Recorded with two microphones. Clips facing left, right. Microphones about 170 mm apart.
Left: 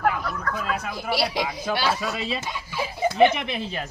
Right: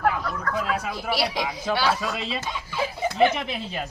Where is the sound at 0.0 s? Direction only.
Centre (ahead or behind).